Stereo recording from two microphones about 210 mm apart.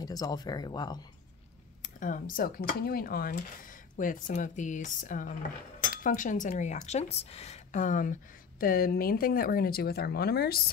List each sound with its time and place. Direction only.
0.0 s speech: 20° left (ahead or behind)
1.8 s speech: 40° left (ahead or behind)